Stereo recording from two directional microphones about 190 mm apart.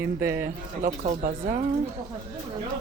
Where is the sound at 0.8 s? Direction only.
45° right (ahead or behind).